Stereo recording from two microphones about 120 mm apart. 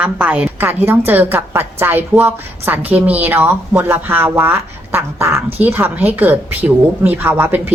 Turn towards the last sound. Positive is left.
turn(degrees=-15)  # may be behind; listen again after turning